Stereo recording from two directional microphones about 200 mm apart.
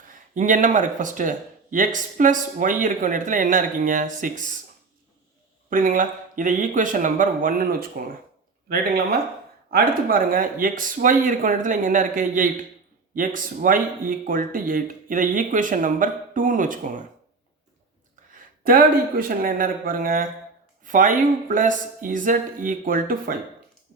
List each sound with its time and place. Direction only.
0.3 s speech: 40° right (ahead or behind)
5.7 s speech: 45° right (ahead or behind)
9.6 s speech: 50° right (ahead or behind)
18.6 s speech: 45° right (ahead or behind)